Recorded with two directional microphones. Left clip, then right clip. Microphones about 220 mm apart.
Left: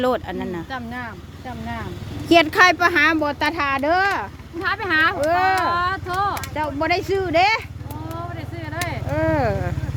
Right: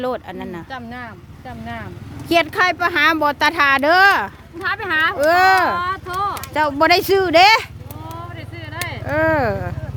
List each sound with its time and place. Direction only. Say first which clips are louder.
0.0 s speech: left 3 dB; 5° left (ahead or behind)
0.7 s speech: left 1 dB; 10° right (ahead or behind)
2.3 s speech: left 2 dB; 5° left (ahead or behind)
2.9 s speech: right 2 dB; 20° right (ahead or behind)
3.2 s speech: right 5 dB; 35° right (ahead or behind)
4.6 s speech: right 1 dB; 20° right (ahead or behind)
5.2 s speech: right 5 dB; 50° right (ahead or behind)
5.7 s speech: even; 5° right (ahead or behind)
6.5 s speech: right 7 dB; 50° right (ahead or behind)
8.7 s a sound: even; 5° right (ahead or behind)
9.0 s speech: right 4 dB; 35° right (ahead or behind)